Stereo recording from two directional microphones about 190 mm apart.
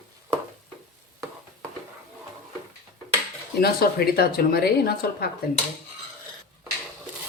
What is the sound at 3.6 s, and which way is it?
Speech, 55° left (ahead or behind).